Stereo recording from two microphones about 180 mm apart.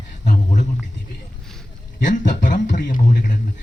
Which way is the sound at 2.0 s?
45° left (ahead or behind).